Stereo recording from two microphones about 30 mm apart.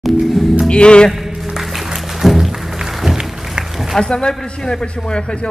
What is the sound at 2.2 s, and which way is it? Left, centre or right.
Music, centre.